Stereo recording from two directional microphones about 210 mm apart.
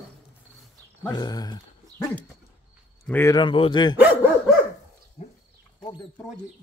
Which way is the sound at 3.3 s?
25° left (ahead or behind).